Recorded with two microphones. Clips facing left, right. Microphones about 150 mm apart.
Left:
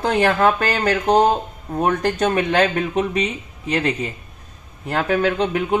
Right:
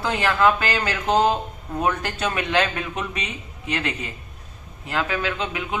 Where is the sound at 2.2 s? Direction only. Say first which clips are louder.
Left 4 dB; 35° left (ahead or behind).